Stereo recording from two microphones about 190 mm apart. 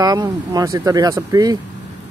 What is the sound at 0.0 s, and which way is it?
Speech, 20° right (ahead or behind).